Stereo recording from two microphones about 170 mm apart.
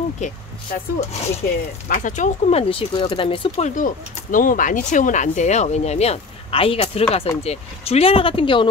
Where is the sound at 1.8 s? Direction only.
50° left (ahead or behind); by 3.7 s 30° left (ahead or behind).